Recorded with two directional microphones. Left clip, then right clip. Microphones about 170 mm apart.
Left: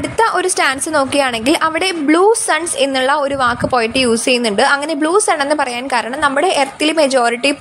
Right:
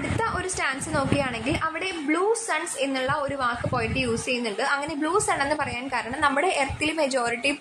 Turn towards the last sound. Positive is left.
turn(degrees=50)  # may be behind; listen again after turning